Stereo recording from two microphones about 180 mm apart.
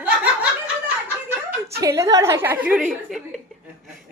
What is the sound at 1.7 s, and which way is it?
A child's voice, 15° right (ahead or behind).